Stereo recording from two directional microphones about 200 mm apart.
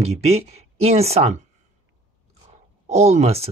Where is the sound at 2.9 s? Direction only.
35° right (ahead or behind).